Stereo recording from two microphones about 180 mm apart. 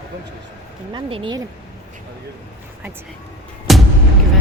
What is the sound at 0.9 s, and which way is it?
Speech, 25° right (ahead or behind).